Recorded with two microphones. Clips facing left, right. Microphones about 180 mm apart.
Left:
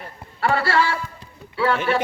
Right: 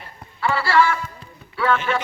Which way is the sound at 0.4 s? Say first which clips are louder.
Left 2 dB; 55° left (ahead or behind).